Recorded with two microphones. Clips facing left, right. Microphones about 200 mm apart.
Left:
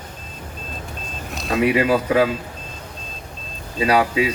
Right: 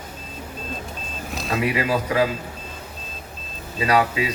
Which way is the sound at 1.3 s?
Centre (ahead or behind).